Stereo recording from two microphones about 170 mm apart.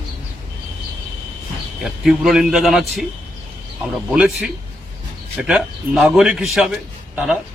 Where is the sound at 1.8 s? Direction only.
Centre (ahead or behind).